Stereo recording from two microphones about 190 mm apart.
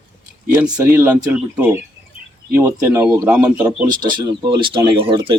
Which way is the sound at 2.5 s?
10° right (ahead or behind).